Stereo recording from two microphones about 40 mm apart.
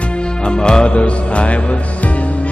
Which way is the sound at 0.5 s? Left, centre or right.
Left.